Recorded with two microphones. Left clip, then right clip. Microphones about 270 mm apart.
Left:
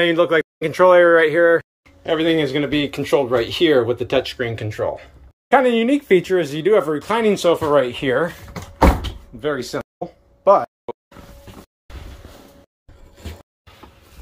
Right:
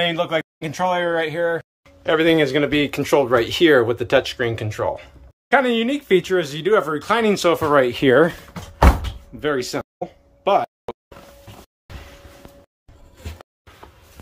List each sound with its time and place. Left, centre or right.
0.0 s speech: centre
2.0 s speech: centre
5.5 s speech: centre
7.6 s speech: centre
9.4 s speech: centre
9.9 s a sound: centre